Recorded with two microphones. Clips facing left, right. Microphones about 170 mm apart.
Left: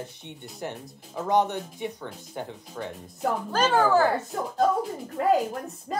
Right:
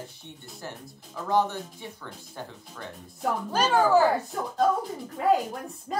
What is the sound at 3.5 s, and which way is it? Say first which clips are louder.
Speech: even; 10° right (ahead or behind).